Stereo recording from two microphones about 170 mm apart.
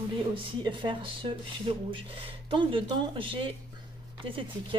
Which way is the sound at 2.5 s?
30° right (ahead or behind).